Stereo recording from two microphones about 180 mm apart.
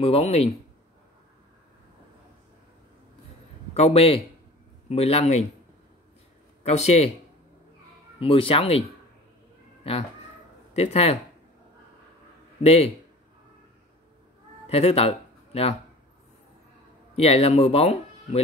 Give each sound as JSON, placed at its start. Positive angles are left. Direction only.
{"t": 0.0, "sound": "a man's voice", "side_deg": 35}
{"t": 3.7, "sound": "a man's voice", "side_deg": 35}
{"t": 6.6, "sound": "a man's voice", "side_deg": 35}
{"t": 8.2, "sound": "a man's voice", "side_deg": 30}
{"t": 10.7, "sound": "speech", "side_deg": 35}
{"t": 12.6, "sound": "a man's voice", "side_deg": 35}
{"t": 14.7, "sound": "speech", "side_deg": 35}
{"t": 17.1, "sound": "speech", "side_deg": 35}